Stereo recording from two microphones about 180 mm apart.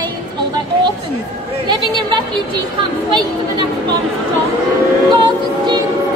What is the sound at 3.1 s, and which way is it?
Speech, 25° right (ahead or behind).